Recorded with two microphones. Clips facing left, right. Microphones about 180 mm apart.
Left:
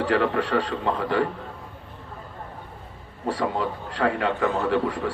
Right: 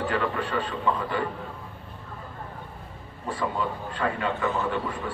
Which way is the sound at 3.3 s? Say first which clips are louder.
Left 3 dB; 80° left.